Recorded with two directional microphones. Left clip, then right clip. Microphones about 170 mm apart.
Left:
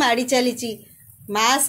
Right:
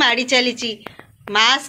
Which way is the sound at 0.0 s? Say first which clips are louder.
Right 3 dB; 5° left (ahead or behind).